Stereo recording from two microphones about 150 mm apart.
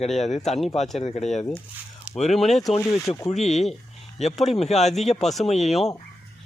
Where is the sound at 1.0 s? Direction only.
45° left (ahead or behind).